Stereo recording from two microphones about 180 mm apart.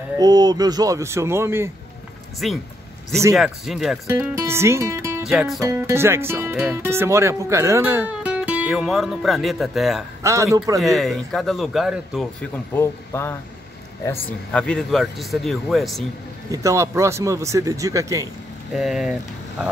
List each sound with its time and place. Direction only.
0.2 s speech: 20° right (ahead or behind)
2.4 s speech: centre (ahead or behind)
4.1 s speech: 15° right (ahead or behind)
5.2 s speech: centre (ahead or behind)
5.6 s speech: 15° right (ahead or behind); by 10.0 s centre (ahead or behind)
10.2 s speech: 15° right (ahead or behind)
10.8 s speech: centre (ahead or behind)
12.7 s speech: 15° left (ahead or behind)
14.5 s speech: 5° left (ahead or behind)
16.5 s speech: 15° right (ahead or behind)
18.7 s speech: centre (ahead or behind)